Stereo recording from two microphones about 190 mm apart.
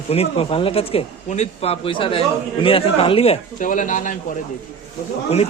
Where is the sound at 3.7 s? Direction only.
45° left (ahead or behind).